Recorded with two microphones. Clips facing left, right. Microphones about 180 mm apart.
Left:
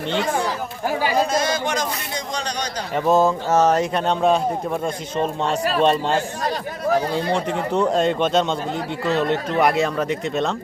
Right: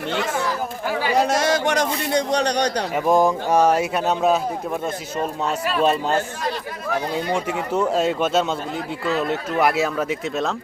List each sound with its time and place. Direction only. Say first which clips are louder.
1.1 s a man's voice: right 5 dB; 70° right (ahead or behind)
2.9 s a man's voice: left 2 dB; 15° right (ahead or behind)
5.8 s speech: left 1 dB; 5° right (ahead or behind)
7.3 s a man's voice: even; 5° right (ahead or behind)